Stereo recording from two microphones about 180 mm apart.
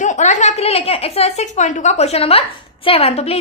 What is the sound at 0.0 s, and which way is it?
A woman's voice, 40° left (ahead or behind).